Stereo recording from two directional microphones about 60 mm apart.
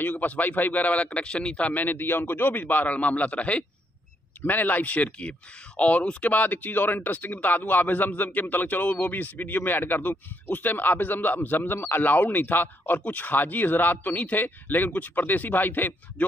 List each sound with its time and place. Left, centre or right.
0.0 s a man's voice: left